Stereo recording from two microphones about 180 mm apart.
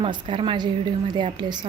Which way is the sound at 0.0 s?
30° right (ahead or behind).